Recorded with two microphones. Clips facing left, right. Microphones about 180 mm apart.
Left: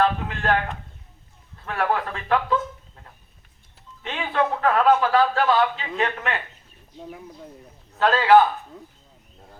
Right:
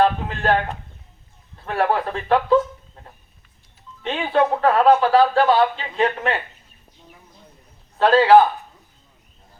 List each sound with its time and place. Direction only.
0.0 s a sound: 35° right (ahead or behind)
1.6 s speech: 35° right (ahead or behind)
4.0 s speech: 35° right (ahead or behind)
7.9 s speech: 35° right (ahead or behind)